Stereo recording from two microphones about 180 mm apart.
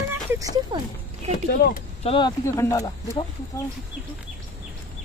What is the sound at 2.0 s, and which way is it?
Speech, 30° left (ahead or behind).